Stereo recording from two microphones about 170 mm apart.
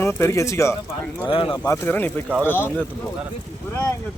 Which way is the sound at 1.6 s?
10° left (ahead or behind).